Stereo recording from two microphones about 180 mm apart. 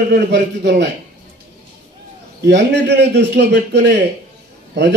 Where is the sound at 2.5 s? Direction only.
70° right (ahead or behind).